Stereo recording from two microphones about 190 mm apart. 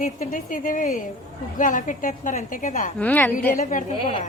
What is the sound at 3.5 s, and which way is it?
Speech, 45° left (ahead or behind).